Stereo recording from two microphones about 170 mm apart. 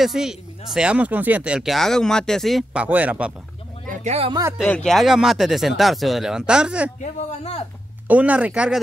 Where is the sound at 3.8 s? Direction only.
40° right (ahead or behind).